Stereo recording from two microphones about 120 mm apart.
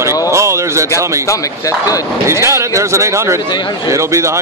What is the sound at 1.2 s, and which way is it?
Speech, 25° left (ahead or behind).